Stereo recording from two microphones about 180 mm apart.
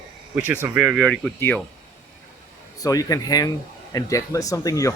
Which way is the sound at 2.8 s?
20° left (ahead or behind).